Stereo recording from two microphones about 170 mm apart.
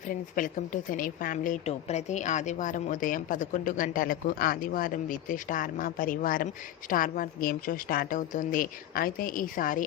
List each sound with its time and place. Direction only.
0.1 s a woman's voice: 50° left (ahead or behind)